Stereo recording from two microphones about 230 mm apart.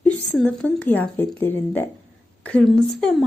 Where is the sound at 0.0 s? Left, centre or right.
Centre.